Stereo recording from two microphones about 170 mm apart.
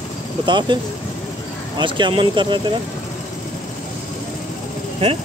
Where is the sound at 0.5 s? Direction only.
25° right (ahead or behind).